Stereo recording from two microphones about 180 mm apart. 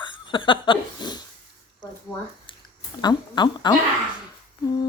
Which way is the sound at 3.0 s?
25° left (ahead or behind).